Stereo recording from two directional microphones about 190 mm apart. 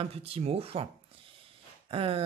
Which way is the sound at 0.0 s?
30° right (ahead or behind).